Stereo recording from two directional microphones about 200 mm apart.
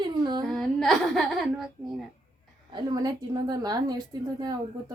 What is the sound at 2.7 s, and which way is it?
A woman's voice, 20° right (ahead or behind).